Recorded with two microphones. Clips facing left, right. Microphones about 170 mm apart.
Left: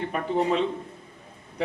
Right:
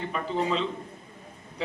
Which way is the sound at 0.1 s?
55° left (ahead or behind).